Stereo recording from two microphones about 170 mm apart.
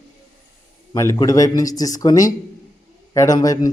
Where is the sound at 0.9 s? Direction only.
20° left (ahead or behind).